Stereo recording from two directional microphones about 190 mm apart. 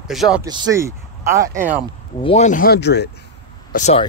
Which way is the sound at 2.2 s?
35° left (ahead or behind).